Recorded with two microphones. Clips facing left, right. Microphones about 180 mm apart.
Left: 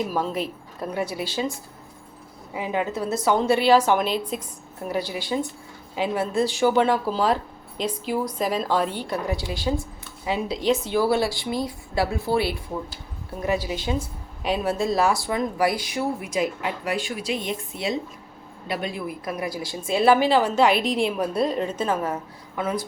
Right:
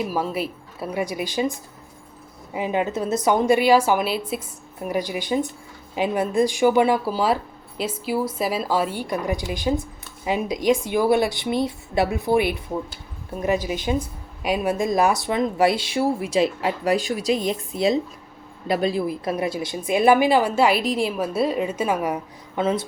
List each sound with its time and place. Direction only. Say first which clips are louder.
0.0 s a woman's voice: right 1 dB; 10° right (ahead or behind)
2.6 s a woman's voice: right 3 dB; 20° right (ahead or behind)
22.5 s speech: right 4 dB; 25° right (ahead or behind)